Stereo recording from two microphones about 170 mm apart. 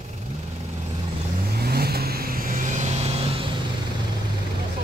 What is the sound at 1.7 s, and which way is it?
Vehicle, 65° right (ahead or behind).